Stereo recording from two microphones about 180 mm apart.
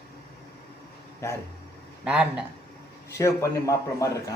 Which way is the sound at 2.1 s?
5° right (ahead or behind).